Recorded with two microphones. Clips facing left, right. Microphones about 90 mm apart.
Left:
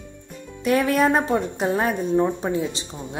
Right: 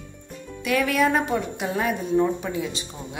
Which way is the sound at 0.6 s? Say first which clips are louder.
Left 3 dB; 35° left (ahead or behind).